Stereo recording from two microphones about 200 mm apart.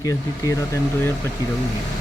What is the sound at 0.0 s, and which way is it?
A man's voice, 15° left (ahead or behind).